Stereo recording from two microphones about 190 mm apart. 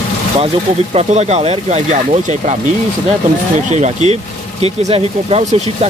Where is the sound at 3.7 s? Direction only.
35° right (ahead or behind).